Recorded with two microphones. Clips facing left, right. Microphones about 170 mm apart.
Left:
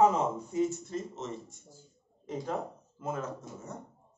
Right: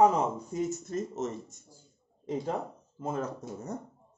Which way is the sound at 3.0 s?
35° right (ahead or behind).